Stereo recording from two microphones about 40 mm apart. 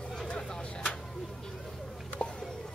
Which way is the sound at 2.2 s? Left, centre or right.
Left.